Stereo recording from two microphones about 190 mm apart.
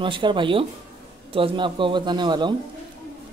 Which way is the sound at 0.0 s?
25° right (ahead or behind).